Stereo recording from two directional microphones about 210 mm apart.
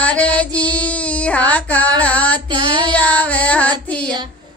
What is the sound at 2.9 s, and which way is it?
Music, 5° left (ahead or behind).